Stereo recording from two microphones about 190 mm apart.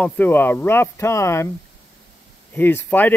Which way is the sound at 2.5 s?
10° left (ahead or behind).